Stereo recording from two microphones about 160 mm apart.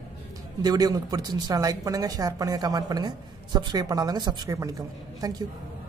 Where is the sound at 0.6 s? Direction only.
25° right (ahead or behind).